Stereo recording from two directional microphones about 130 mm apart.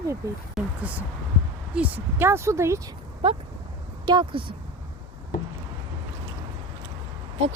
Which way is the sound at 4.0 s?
35° right (ahead or behind).